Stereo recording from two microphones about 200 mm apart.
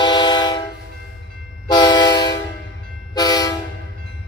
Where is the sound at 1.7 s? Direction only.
20° left (ahead or behind).